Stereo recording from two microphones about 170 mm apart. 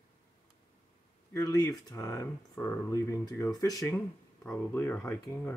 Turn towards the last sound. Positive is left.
turn(degrees=15)  # may be behind; listen again after turning